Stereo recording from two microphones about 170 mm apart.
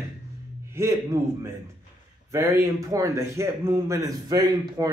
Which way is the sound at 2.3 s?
15° right (ahead or behind).